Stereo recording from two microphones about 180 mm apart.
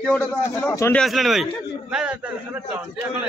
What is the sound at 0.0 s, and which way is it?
A man's voice, 5° left (ahead or behind).